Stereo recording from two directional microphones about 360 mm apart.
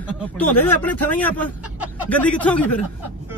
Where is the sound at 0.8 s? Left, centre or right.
Centre.